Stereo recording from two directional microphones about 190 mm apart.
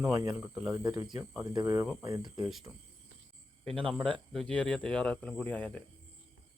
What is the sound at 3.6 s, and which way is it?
Speech, 5° left (ahead or behind).